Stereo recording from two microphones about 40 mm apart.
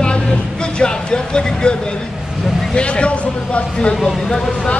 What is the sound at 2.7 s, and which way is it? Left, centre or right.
Speech, left.